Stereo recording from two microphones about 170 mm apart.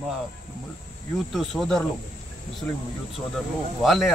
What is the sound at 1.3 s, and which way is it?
Speech, centre (ahead or behind).